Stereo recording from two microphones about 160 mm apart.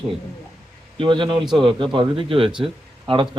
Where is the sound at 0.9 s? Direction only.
30° right (ahead or behind).